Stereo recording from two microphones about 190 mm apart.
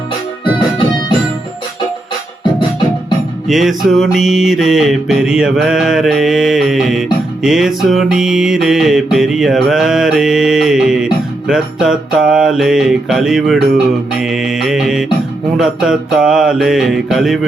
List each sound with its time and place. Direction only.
3.4 s mantra: centre (ahead or behind)